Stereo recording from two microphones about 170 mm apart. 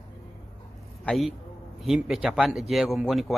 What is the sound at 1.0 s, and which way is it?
A man's voice, 5° left (ahead or behind).